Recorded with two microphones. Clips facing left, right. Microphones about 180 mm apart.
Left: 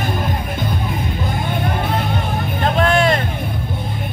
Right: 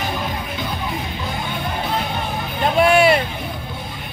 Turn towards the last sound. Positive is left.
turn(degrees=-10)  # may be behind; listen again after turning